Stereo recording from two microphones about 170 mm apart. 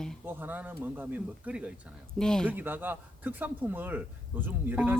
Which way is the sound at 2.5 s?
10° right (ahead or behind).